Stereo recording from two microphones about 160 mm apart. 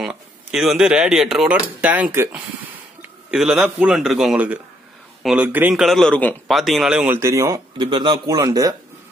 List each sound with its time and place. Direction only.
0.0 s a man's voice: 5° right (ahead or behind); by 8.7 s 20° right (ahead or behind)